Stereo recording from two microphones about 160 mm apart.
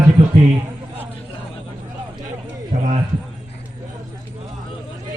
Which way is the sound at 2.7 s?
55° right (ahead or behind).